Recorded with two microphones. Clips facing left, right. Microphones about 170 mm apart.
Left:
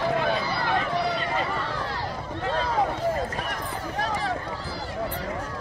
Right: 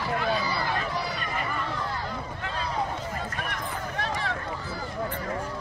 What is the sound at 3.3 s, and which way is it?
Run, 35° left (ahead or behind).